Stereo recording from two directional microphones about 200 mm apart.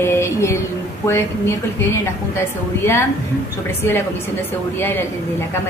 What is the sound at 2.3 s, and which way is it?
Speech, 15° left (ahead or behind).